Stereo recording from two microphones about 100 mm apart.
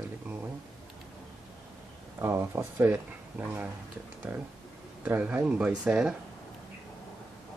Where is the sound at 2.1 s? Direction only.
25° right (ahead or behind); by 6.1 s 5° right (ahead or behind).